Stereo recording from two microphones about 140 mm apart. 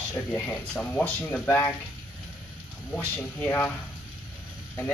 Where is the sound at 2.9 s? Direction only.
10° left (ahead or behind).